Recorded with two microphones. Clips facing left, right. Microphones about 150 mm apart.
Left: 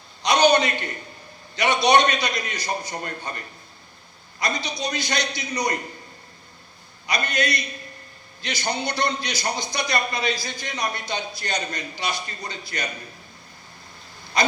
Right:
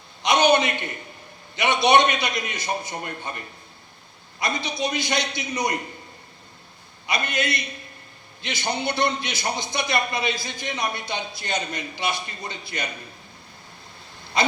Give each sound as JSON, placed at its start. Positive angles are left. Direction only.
{"t": 0.3, "sound": "a sound", "side_deg": -20}
{"t": 1.5, "sound": "a man's voice", "side_deg": -20}
{"t": 7.1, "sound": "a man's voice", "side_deg": -25}